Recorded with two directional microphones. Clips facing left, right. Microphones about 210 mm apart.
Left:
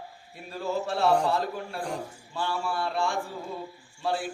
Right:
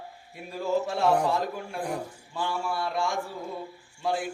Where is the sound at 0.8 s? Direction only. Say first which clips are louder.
Left 3 dB; 10° right (ahead or behind).